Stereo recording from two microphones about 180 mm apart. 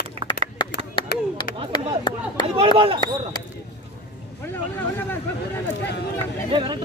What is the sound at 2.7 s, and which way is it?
Speech, 30° right (ahead or behind).